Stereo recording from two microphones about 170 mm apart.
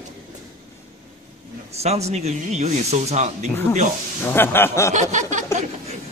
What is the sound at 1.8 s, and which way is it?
Speech, 40° right (ahead or behind).